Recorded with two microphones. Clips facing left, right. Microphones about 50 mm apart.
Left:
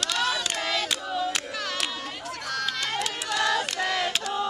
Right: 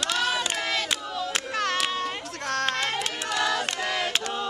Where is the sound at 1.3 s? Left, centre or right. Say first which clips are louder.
Right 3 dB; right.